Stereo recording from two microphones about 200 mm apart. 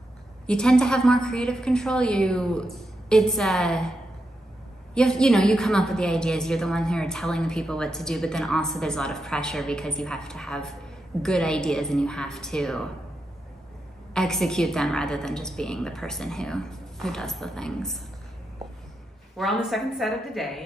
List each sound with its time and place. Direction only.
0.5 s a woman's voice: 5° left (ahead or behind)
4.9 s a woman's voice: 5° left (ahead or behind)
14.1 s a woman's voice: centre (ahead or behind)
19.3 s a woman's voice: centre (ahead or behind)